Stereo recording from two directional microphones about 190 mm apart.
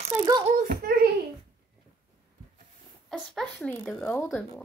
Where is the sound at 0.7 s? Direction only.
55° right (ahead or behind).